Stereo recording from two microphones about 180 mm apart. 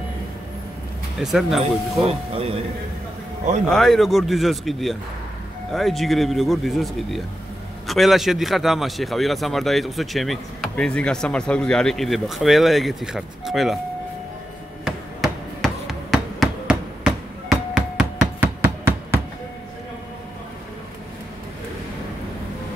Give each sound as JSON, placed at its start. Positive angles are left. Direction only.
{"t": 1.1, "sound": "a man's voice", "side_deg": 0}
{"t": 1.6, "sound": "speech", "side_deg": -35}
{"t": 3.7, "sound": "a man's voice", "side_deg": 0}
{"t": 14.9, "sound": "hammer", "side_deg": 0}